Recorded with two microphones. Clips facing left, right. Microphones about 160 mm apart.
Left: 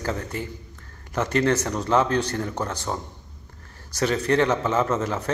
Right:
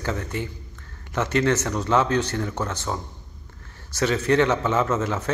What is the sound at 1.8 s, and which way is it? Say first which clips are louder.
A man's voice: even; 35° left (ahead or behind).